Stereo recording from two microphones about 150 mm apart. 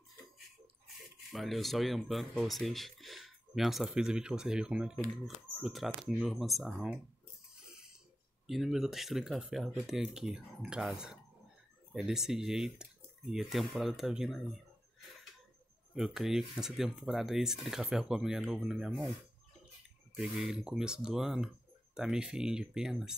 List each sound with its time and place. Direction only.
1.3 s speech: centre (ahead or behind)
7.5 s a sound: 5° right (ahead or behind)
8.5 s speech: centre (ahead or behind)
15.9 s speech: centre (ahead or behind)
20.2 s speech: centre (ahead or behind)